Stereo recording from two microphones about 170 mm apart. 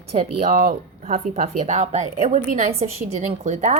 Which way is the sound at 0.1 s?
40° right (ahead or behind).